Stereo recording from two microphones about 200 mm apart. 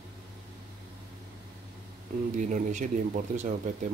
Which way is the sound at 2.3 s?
40° right (ahead or behind).